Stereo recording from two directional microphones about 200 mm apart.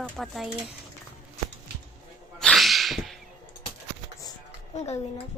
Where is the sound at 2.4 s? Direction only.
Centre (ahead or behind).